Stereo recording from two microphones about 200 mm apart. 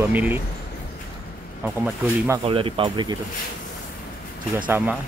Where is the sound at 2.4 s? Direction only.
25° right (ahead or behind).